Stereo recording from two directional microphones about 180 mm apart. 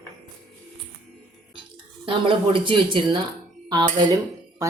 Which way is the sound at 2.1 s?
30° right (ahead or behind).